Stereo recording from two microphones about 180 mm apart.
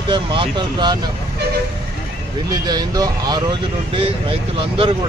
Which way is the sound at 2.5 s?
20° right (ahead or behind).